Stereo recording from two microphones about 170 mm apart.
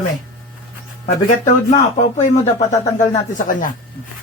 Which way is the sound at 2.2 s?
45° left (ahead or behind).